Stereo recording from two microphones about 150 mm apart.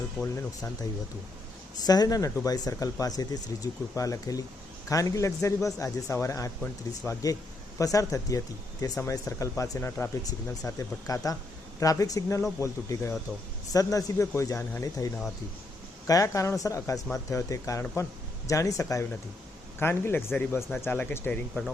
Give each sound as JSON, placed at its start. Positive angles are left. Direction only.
{"t": 1.8, "sound": "speech", "side_deg": 25}
{"t": 6.6, "sound": "speech", "side_deg": 10}
{"t": 7.8, "sound": "speech", "side_deg": 20}